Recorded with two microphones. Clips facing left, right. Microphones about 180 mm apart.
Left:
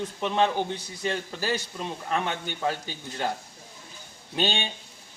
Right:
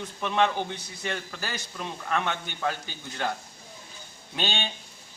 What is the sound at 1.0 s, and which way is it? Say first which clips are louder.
Speech: left 4 dB; 30° left (ahead or behind).